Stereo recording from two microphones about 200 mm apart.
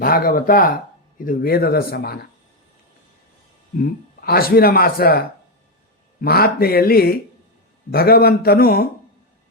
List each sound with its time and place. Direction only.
0.0 s speech: 45° left (ahead or behind)
3.8 s speech: 50° left (ahead or behind)
6.2 s speech: 50° left (ahead or behind)